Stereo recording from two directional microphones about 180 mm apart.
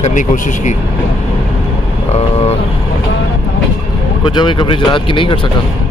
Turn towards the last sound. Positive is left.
turn(degrees=30)  # may be behind; listen again after turning